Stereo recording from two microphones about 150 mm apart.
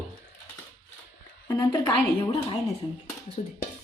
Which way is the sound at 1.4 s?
25° left (ahead or behind).